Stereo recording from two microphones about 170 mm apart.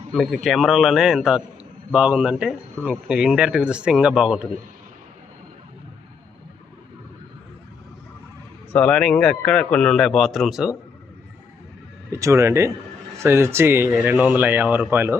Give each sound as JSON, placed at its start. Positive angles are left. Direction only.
{"t": 0.1, "sound": "speech", "side_deg": 0}
{"t": 8.7, "sound": "speech", "side_deg": 5}
{"t": 12.1, "sound": "speech", "side_deg": -15}